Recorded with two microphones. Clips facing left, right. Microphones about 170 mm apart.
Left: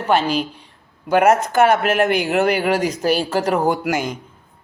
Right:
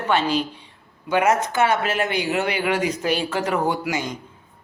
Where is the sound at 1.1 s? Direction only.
50° left (ahead or behind).